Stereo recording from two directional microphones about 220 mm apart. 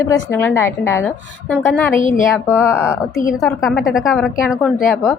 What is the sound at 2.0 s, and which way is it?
Speech, 35° left (ahead or behind).